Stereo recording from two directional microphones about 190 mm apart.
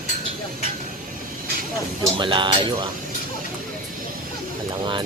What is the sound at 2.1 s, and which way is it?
Speech, 25° right (ahead or behind).